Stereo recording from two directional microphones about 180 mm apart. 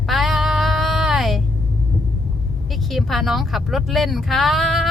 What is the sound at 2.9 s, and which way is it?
Speech, centre (ahead or behind).